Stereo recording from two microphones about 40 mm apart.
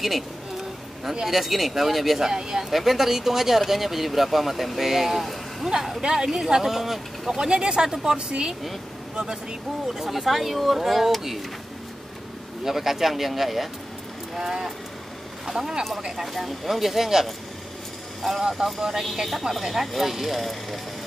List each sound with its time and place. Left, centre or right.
1.2 s speech: centre
5.7 s speech: centre
12.6 s speech: centre
18.4 s speech: centre